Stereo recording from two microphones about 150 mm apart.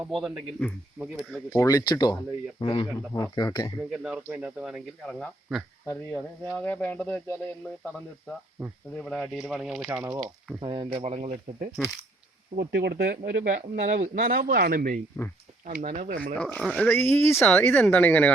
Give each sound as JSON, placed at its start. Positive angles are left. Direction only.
{"t": 0.0, "sound": "speech", "side_deg": -5}
{"t": 1.5, "sound": "speech", "side_deg": 20}
{"t": 3.8, "sound": "speech", "side_deg": -5}
{"t": 5.9, "sound": "speech", "side_deg": 15}
{"t": 9.0, "sound": "speech", "side_deg": 0}
{"t": 10.6, "sound": "speech", "side_deg": -30}
{"t": 11.0, "sound": "speech", "side_deg": -45}
{"t": 11.8, "sound": "speech", "side_deg": 0}
{"t": 12.5, "sound": "speech", "side_deg": -90}
{"t": 15.6, "sound": "speech", "side_deg": -50}
{"t": 16.3, "sound": "speech", "side_deg": 10}